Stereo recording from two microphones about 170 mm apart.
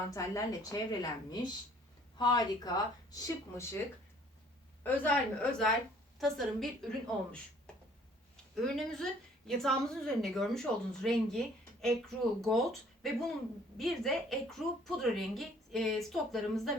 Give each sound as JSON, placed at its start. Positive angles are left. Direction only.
{"t": 0.1, "sound": "speech", "side_deg": 20}
{"t": 2.1, "sound": "speech", "side_deg": 25}
{"t": 4.8, "sound": "a woman's voice", "side_deg": 10}
{"t": 8.6, "sound": "a woman's voice", "side_deg": 0}